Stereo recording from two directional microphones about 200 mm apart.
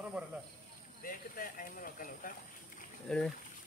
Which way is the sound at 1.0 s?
45° left (ahead or behind).